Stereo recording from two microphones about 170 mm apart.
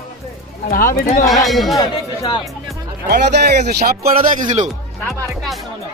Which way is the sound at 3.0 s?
70° right (ahead or behind).